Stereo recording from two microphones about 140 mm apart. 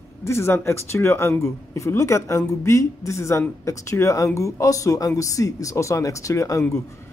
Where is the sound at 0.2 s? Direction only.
20° left (ahead or behind).